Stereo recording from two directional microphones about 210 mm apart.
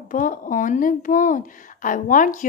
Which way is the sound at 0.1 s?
40° left (ahead or behind).